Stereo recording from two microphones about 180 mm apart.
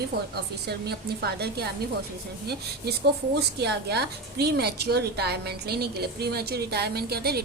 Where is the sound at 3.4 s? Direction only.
65° right (ahead or behind).